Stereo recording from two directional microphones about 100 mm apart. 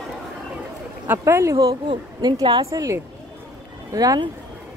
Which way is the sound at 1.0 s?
25° right (ahead or behind).